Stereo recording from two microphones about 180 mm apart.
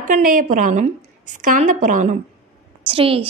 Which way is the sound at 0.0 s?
45° right (ahead or behind).